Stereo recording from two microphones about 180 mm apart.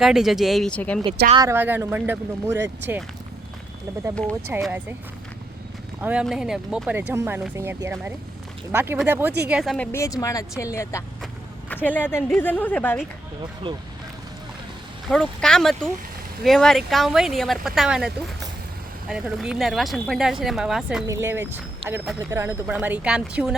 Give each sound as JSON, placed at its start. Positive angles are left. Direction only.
{"t": 0.0, "sound": "speech", "side_deg": 0}
{"t": 1.5, "sound": "speech", "side_deg": -10}
{"t": 4.3, "sound": "speech", "side_deg": -15}
{"t": 6.0, "sound": "speech", "side_deg": -5}
{"t": 9.7, "sound": "a woman's voice", "side_deg": 10}
{"t": 13.4, "sound": "speech", "side_deg": -25}
{"t": 15.0, "sound": "speech", "side_deg": 5}
{"t": 21.1, "sound": "speech", "side_deg": -15}
{"t": 21.8, "sound": "speech", "side_deg": -30}
{"t": 22.3, "sound": "speech", "side_deg": -15}